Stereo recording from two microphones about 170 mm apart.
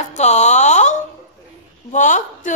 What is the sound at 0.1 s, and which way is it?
Music, 45° left (ahead or behind).